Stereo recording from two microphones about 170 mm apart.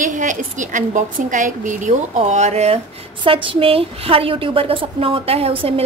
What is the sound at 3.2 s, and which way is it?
Speech, 30° right (ahead or behind).